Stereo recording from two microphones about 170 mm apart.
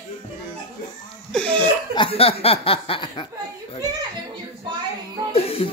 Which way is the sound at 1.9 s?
35° left (ahead or behind).